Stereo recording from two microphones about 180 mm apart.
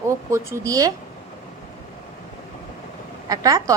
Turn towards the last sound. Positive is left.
turn(degrees=-20)  # may be behind; listen again after turning